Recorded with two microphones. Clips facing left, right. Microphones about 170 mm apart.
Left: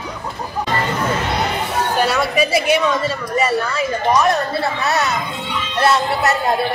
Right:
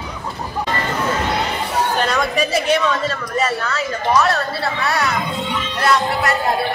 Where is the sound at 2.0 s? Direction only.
5° left (ahead or behind); by 5.1 s 25° left (ahead or behind).